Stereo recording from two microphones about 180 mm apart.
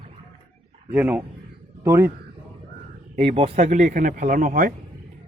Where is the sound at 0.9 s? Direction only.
10° right (ahead or behind).